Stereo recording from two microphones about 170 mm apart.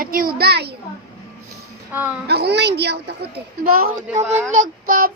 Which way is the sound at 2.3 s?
75° right (ahead or behind).